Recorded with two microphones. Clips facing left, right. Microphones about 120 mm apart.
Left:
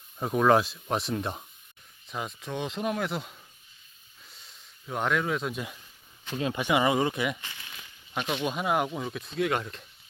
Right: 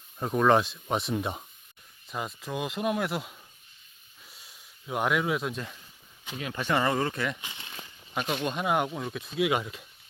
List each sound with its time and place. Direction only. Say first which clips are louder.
0.2 s speech: even; 5° left (ahead or behind)
4.3 s a sound: even; 5° right (ahead or behind)
6.4 s speech: left 2 dB; 15° left (ahead or behind)
7.4 s crumpling: right 1 dB; 20° right (ahead or behind)
8.1 s speech: even; centre (ahead or behind)